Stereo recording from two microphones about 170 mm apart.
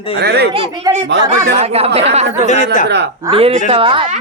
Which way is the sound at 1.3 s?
35° right (ahead or behind).